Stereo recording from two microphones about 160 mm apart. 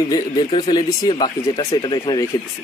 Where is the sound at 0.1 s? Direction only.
25° left (ahead or behind).